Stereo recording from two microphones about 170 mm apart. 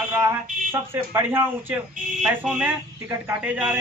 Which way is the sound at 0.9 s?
15° right (ahead or behind).